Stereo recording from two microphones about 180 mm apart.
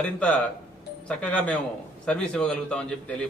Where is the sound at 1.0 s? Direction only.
5° left (ahead or behind).